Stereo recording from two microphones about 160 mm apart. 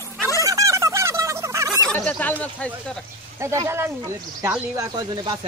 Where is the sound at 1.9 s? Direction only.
10° left (ahead or behind).